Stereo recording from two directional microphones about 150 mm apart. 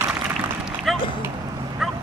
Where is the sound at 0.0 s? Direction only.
15° right (ahead or behind).